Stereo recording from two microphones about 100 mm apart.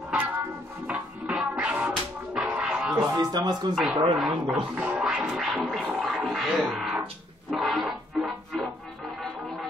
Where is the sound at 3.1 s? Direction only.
40° right (ahead or behind).